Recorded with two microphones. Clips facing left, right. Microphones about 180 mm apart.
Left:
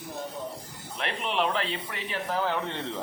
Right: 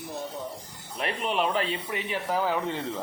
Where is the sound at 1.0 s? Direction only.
40° right (ahead or behind).